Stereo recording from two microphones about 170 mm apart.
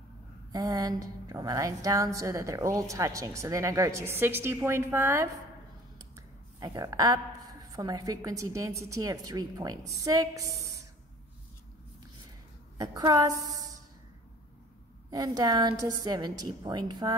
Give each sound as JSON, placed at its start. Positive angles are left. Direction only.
{"t": 0.5, "sound": "a woman's voice", "side_deg": -20}
{"t": 12.7, "sound": "speech", "side_deg": -20}
{"t": 15.0, "sound": "speech", "side_deg": -20}